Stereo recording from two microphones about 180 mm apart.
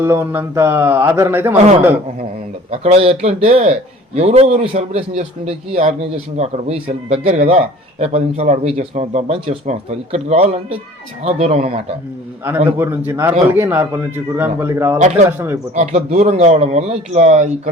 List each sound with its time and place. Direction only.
0.0 s speech: 15° right (ahead or behind)
2.8 s speech: 35° right (ahead or behind)
12.7 s speech: 10° right (ahead or behind)
14.9 s speech: 40° right (ahead or behind)
15.3 s speech: 10° right (ahead or behind)
15.7 s speech: 40° right (ahead or behind)